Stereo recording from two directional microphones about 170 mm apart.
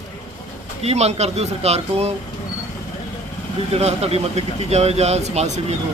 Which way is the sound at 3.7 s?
40° right (ahead or behind).